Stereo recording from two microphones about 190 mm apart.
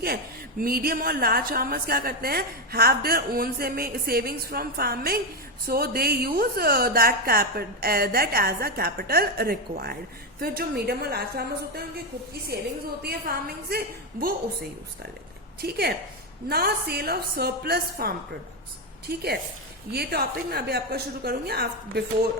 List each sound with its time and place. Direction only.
0.6 s a woman's voice: 50° right (ahead or behind)
13.0 s a woman's voice: 55° right (ahead or behind)
15.6 s a woman's voice: 55° right (ahead or behind)